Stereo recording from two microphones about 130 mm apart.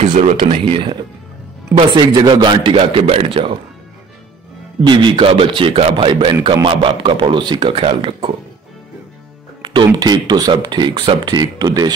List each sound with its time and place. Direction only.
0.0 s speech: 65° right (ahead or behind)
0.4 s speech: 40° right (ahead or behind)
2.0 s speech: 35° right (ahead or behind)
4.8 s speech: 40° right (ahead or behind)
9.6 s speech: 35° right (ahead or behind)